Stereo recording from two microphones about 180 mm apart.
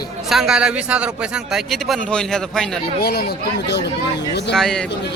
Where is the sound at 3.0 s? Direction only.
60° left (ahead or behind).